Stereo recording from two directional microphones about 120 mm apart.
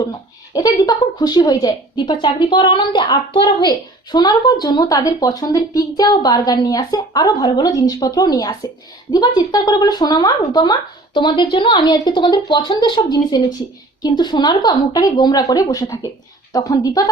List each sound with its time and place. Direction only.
0.5 s a woman's voice: 30° left (ahead or behind)